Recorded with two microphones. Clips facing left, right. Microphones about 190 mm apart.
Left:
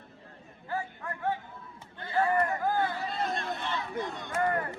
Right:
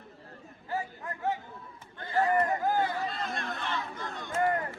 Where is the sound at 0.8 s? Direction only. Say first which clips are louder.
Even; 20° right (ahead or behind).